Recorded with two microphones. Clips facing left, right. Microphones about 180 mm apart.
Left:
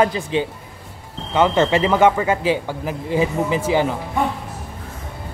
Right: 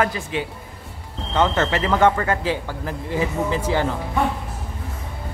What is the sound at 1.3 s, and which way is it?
Speech, 10° left (ahead or behind).